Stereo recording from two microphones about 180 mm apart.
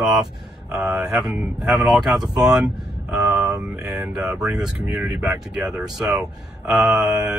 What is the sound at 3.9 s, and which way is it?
Speech, 5° right (ahead or behind).